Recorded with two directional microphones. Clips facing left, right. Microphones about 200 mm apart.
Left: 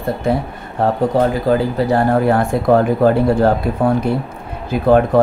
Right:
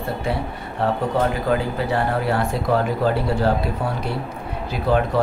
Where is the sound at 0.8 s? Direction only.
45° left (ahead or behind).